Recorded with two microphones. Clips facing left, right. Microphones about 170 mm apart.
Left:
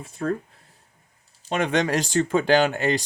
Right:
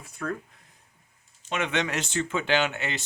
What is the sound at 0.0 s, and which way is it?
Speech, 30° left (ahead or behind).